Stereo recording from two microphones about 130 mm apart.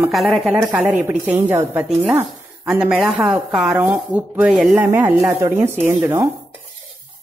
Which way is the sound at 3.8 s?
20° right (ahead or behind).